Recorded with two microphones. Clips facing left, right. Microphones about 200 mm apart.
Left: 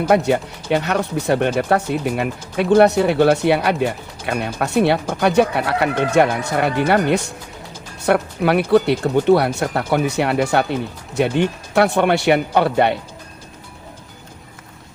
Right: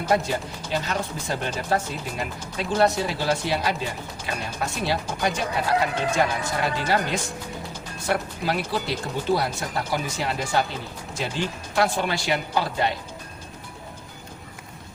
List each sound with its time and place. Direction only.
0.1 s speech: 65° left (ahead or behind)